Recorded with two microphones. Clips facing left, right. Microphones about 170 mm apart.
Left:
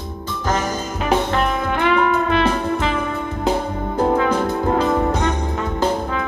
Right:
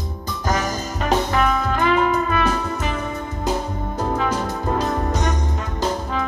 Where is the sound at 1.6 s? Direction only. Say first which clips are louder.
Left 1 dB; 65° left (ahead or behind).